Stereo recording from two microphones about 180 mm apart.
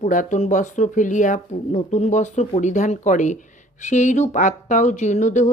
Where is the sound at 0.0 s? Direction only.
45° left (ahead or behind).